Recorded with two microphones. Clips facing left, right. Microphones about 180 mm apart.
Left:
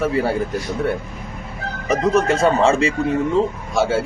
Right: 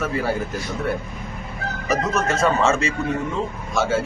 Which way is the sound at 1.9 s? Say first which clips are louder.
Left 5 dB; 30° left (ahead or behind).